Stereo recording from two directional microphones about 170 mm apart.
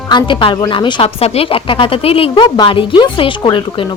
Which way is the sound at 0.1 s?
30° left (ahead or behind).